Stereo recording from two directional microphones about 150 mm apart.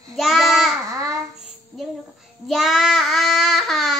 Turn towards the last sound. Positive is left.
turn(degrees=0)  # may be behind; listen again after turning